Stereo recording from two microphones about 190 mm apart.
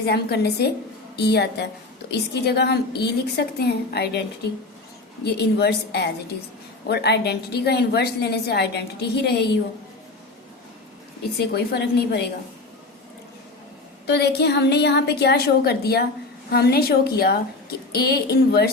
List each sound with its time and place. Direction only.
0.0 s a woman's voice: 55° left (ahead or behind)
5.2 s a woman's voice: 60° left (ahead or behind)
11.3 s a woman's voice: 60° left (ahead or behind)
14.1 s a woman's voice: 60° left (ahead or behind)